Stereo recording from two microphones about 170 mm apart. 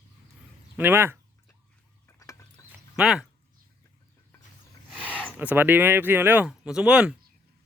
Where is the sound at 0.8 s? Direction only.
15° right (ahead or behind).